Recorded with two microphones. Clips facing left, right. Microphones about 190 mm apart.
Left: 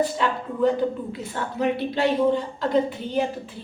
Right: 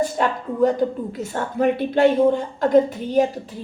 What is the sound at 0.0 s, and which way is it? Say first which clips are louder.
A woman's voice: right 2 dB; 45° right (ahead or behind).